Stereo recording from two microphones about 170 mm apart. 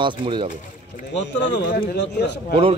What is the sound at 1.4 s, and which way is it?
Speech, 90° left.